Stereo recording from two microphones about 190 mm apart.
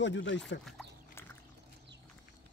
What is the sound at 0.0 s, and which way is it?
Speech, 70° left (ahead or behind).